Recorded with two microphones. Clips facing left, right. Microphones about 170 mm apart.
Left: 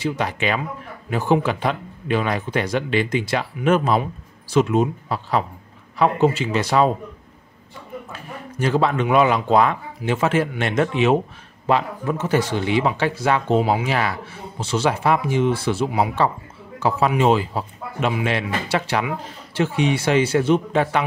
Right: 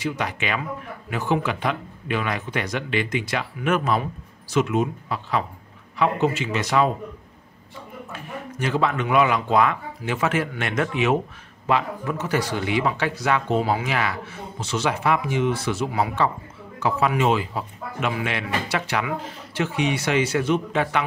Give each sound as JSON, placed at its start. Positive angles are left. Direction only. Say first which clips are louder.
{"t": 0.0, "sound": "a man's voice", "louder": "left 4 dB", "side_deg": 30}
{"t": 8.1, "sound": "speech", "louder": "right 1 dB", "side_deg": 35}
{"t": 13.8, "sound": "a man's voice", "louder": "left 3 dB", "side_deg": 35}
{"t": 17.2, "sound": "a man's voice", "louder": "left 4 dB", "side_deg": 30}